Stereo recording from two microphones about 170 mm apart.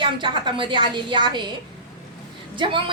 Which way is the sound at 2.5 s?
30° right (ahead or behind).